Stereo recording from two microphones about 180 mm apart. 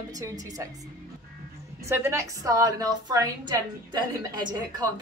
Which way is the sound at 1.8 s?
15° right (ahead or behind).